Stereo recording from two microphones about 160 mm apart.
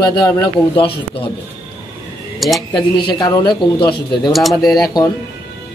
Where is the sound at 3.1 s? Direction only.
25° left (ahead or behind).